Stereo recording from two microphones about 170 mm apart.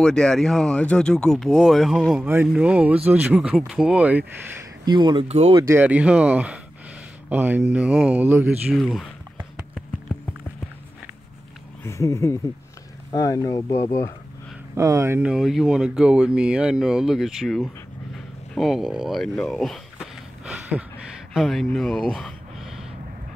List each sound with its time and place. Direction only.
0.0 s speech: 5° left (ahead or behind)
4.8 s speech: 25° right (ahead or behind)
5.3 s speech: 40° right (ahead or behind)
5.6 s speech: 15° right (ahead or behind)
8.7 s a sound: centre (ahead or behind)
11.8 s speech: 15° left (ahead or behind)
14.8 s speech: 15° right (ahead or behind); by 22.8 s centre (ahead or behind)